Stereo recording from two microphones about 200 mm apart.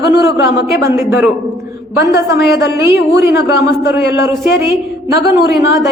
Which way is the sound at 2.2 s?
55° left (ahead or behind).